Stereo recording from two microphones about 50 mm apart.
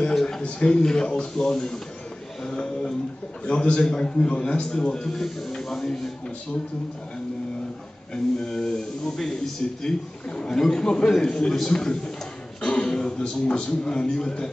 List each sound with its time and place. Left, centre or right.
0.1 s a sound: centre
0.4 s speech: centre
8.1 s speech: centre